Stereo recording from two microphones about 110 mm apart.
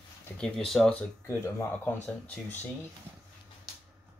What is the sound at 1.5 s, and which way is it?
Speech, 20° left (ahead or behind).